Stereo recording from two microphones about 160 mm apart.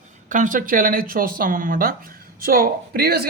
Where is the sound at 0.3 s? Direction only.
55° right (ahead or behind).